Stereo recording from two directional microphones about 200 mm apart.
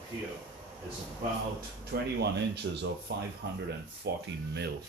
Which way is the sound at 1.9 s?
55° right (ahead or behind).